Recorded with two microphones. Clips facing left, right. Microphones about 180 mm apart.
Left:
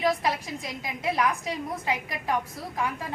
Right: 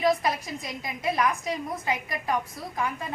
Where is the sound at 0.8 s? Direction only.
5° left (ahead or behind).